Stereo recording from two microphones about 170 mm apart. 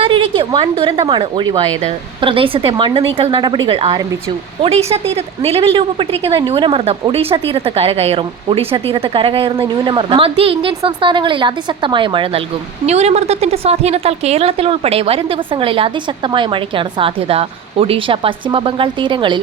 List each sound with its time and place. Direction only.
0.0 s a woman's voice: 30° right (ahead or behind)